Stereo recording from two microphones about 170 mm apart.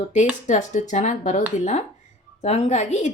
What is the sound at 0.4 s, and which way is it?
A woman's voice, 45° left (ahead or behind).